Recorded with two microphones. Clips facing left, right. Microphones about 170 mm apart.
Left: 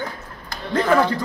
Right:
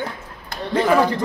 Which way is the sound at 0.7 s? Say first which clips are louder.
Right 1 dB; 10° right (ahead or behind).